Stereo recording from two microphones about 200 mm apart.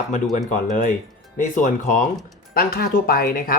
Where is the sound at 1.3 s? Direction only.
40° left (ahead or behind).